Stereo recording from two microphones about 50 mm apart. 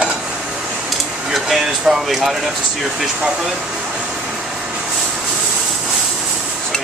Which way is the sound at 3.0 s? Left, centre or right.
Centre.